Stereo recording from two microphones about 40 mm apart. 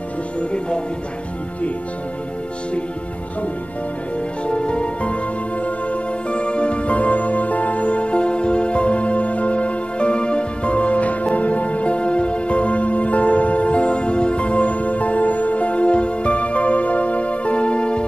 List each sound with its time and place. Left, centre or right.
0.4 s music: left
4.5 s music: left
6.3 s music: left